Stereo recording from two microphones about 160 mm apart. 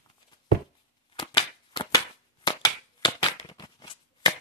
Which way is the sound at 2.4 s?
30° left (ahead or behind).